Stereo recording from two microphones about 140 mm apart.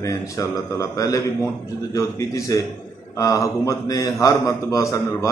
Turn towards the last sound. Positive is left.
turn(degrees=25)  # may be behind; listen again after turning